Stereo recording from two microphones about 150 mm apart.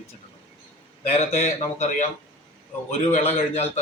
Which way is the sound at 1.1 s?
50° left (ahead or behind).